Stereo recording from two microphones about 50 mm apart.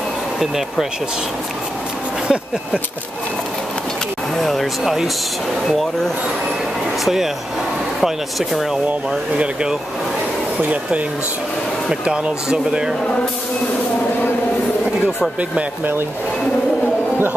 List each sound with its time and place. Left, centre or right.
0.4 s speech: centre
2.2 s speech: centre
4.4 s speech: centre
8.0 s speech: centre
9.1 s speech: centre
10.6 s speech: right
11.9 s speech: centre